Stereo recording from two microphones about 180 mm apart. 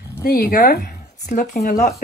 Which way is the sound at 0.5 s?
55° left (ahead or behind).